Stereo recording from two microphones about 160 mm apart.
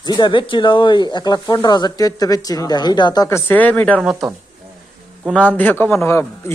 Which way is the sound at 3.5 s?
10° left (ahead or behind).